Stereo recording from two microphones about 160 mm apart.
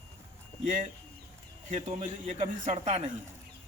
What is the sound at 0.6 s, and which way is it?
A man's voice, 55° right (ahead or behind).